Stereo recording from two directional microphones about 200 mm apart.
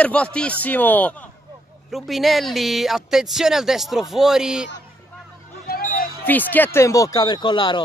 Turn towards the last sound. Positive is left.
turn(degrees=25)  # may be behind; listen again after turning